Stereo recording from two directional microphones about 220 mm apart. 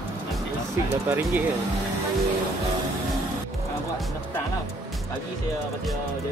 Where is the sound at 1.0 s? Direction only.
10° right (ahead or behind).